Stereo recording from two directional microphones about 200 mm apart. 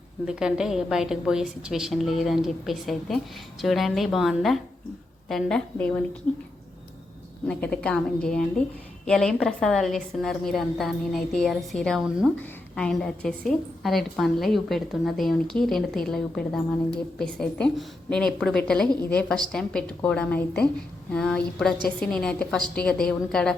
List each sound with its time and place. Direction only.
0.3 s a woman's voice: 5° right (ahead or behind)
7.4 s a woman's voice: 5° left (ahead or behind)